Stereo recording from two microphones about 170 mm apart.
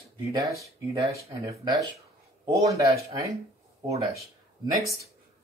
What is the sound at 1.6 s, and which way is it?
Speech, 25° right (ahead or behind).